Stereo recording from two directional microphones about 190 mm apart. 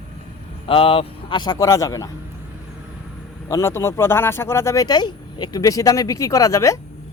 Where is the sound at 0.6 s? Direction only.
30° left (ahead or behind).